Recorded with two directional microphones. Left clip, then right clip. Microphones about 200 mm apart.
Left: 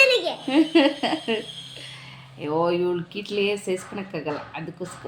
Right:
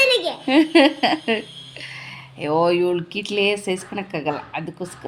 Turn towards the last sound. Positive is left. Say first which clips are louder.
# right 5 dB
turn(degrees=-55)  # may be behind; listen again after turning